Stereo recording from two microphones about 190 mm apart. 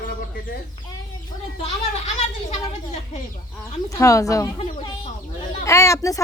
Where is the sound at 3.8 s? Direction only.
15° left (ahead or behind).